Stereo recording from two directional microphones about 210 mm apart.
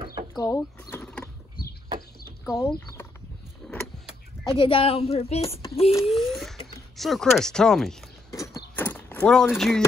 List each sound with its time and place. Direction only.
0.3 s power windows: 15° left (ahead or behind)
2.4 s speech: 10° left (ahead or behind)
3.6 s vehicle: 5° left (ahead or behind)
4.6 s speech: 25° left (ahead or behind)
6.0 s speech: centre (ahead or behind)
8.7 s a sound: 10° left (ahead or behind)